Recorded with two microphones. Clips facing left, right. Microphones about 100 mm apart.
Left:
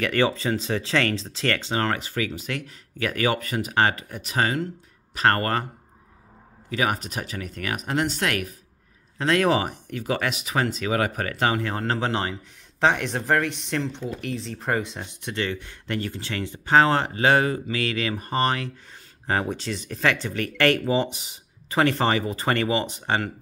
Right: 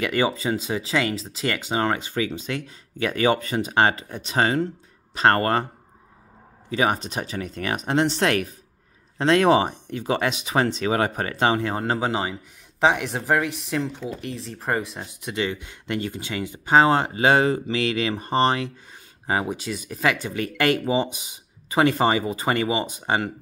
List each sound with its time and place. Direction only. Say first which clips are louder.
0.0 s speech: even; 15° right (ahead or behind)
6.7 s speech: right 3 dB; 25° right (ahead or behind)
19.2 s speech: right 1 dB; 10° right (ahead or behind)